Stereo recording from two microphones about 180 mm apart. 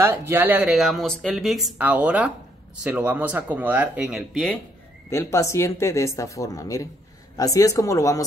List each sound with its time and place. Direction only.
0.0 s speech: 10° right (ahead or behind)
5.1 s speech: 15° left (ahead or behind)